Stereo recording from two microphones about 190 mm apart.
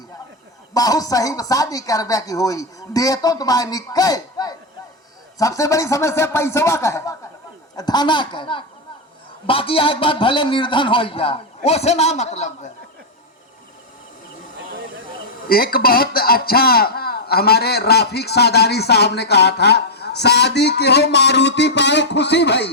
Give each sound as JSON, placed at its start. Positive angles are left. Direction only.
{"t": 0.7, "sound": "a woman's voice", "side_deg": 20}
{"t": 15.4, "sound": "speech", "side_deg": 50}